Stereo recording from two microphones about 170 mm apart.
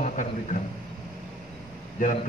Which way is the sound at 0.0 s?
45° left (ahead or behind).